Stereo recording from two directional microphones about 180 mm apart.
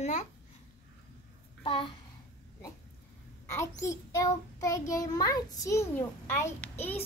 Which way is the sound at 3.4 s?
15° left (ahead or behind).